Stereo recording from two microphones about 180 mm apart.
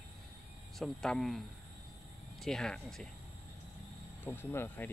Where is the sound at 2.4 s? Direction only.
5° left (ahead or behind).